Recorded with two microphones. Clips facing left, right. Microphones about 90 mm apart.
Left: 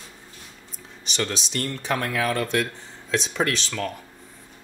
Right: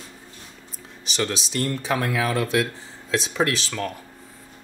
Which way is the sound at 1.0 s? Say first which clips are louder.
Right 2 dB; centre (ahead or behind).